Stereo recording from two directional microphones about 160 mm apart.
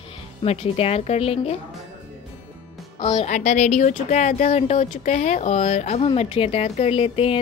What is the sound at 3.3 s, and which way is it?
Speech, 50° left (ahead or behind).